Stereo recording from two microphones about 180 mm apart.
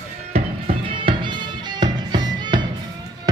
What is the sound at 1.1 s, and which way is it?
Music, 25° right (ahead or behind).